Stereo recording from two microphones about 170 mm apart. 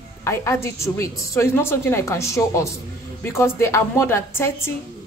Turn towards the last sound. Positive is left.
turn(degrees=15)  # may be behind; listen again after turning